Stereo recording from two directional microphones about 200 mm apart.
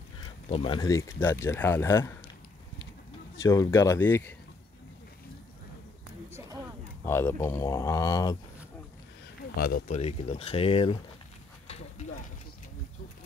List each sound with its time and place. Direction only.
0.2 s speech: 25° left (ahead or behind)
3.4 s speech: 15° left (ahead or behind)
7.1 s speech: 10° left (ahead or behind)
9.6 s speech: 45° left (ahead or behind)
9.9 s speech: 30° left (ahead or behind)
11.6 s a sound: 30° left (ahead or behind)